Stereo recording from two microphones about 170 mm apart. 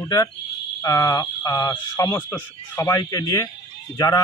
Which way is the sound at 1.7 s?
10° left (ahead or behind).